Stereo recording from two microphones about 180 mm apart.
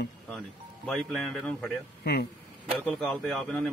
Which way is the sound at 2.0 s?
60° left (ahead or behind).